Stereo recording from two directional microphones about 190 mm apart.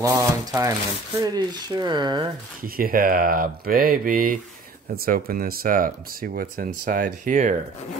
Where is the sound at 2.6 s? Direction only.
50° right (ahead or behind).